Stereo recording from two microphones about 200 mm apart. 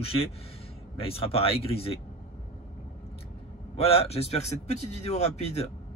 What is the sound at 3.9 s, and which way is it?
Speech, 30° left (ahead or behind).